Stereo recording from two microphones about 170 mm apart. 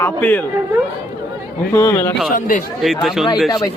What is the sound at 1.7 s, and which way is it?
Speech, 15° left (ahead or behind).